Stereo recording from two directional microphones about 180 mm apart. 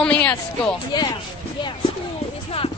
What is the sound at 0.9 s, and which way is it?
Speech, 25° left (ahead or behind).